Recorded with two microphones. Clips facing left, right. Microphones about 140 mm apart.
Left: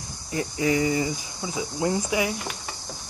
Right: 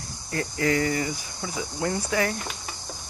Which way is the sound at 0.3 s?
15° left (ahead or behind).